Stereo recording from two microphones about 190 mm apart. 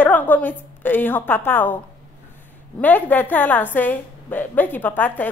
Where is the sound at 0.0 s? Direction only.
10° left (ahead or behind).